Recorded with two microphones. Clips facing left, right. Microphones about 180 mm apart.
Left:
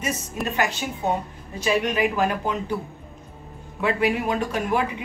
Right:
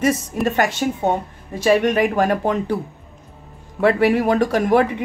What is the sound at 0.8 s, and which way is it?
Speech, 45° right (ahead or behind).